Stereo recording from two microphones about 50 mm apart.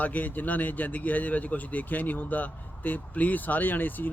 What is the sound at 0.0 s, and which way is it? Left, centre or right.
A man's voice, left.